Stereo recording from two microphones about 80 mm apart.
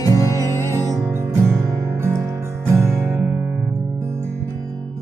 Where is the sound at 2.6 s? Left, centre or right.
Right.